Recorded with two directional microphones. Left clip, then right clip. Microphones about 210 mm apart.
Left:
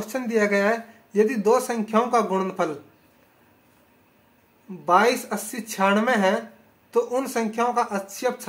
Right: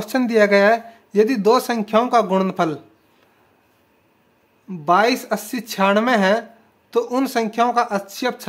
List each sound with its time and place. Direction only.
0.0 s speech: 45° right (ahead or behind)
4.8 s speech: 45° right (ahead or behind)